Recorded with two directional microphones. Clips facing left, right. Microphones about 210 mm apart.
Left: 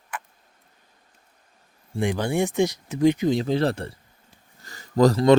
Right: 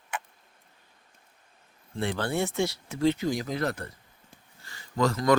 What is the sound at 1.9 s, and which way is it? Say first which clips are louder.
Speech: left 5 dB; 15° left (ahead or behind).